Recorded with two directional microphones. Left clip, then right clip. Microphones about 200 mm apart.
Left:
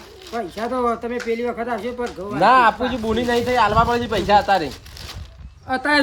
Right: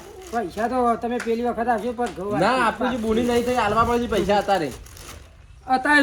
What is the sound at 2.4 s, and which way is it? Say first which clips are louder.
Speech: left 7 dB; 45° left (ahead or behind).